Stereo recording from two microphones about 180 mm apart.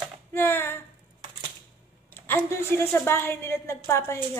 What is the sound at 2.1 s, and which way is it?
A woman's voice, 15° left (ahead or behind).